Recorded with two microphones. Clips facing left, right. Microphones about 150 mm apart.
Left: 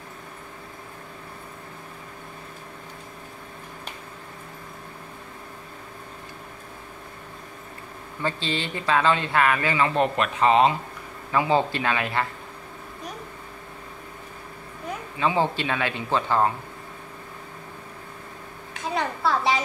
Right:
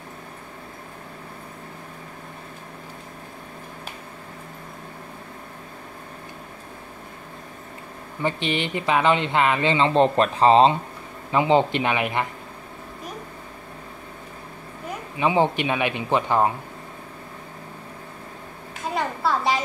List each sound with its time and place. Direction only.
8.2 s speech: 20° right (ahead or behind)
15.1 s speech: 20° right (ahead or behind)
18.7 s a sound: centre (ahead or behind)